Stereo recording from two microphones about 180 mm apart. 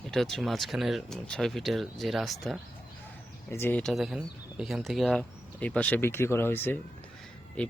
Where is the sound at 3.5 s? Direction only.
10° left (ahead or behind).